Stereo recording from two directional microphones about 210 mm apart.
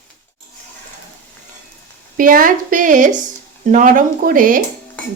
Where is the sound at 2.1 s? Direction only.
40° right (ahead or behind).